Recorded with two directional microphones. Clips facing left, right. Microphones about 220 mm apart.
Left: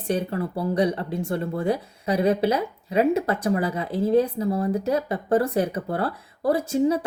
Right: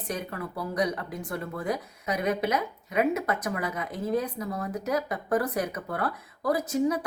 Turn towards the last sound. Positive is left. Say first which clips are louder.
# left 4 dB
turn(degrees=30)  # may be behind; listen again after turning